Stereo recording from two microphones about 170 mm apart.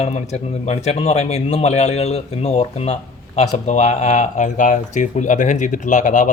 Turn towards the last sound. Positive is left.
turn(degrees=50)  # may be behind; listen again after turning